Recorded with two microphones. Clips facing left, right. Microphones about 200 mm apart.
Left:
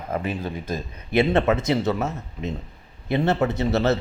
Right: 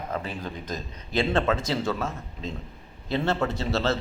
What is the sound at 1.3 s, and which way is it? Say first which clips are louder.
Speech: left 5 dB; 20° left (ahead or behind).